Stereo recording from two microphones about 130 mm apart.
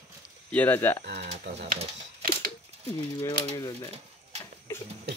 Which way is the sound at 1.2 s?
55° right (ahead or behind).